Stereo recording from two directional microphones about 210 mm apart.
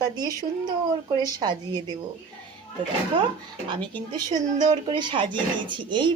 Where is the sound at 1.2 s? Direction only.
20° right (ahead or behind).